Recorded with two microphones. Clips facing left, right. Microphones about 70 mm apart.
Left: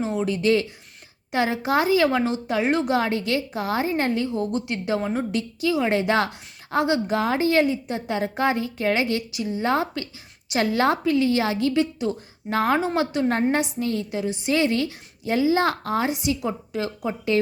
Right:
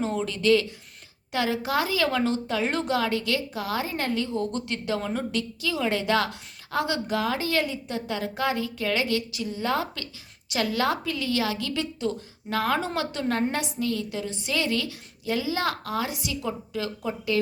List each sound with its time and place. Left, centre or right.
0.0 s speech: centre; by 17.4 s left